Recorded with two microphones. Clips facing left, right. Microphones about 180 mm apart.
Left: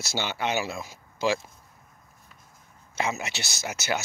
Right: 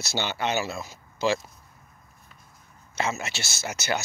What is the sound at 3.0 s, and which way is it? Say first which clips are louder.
Speech: even; 15° left (ahead or behind).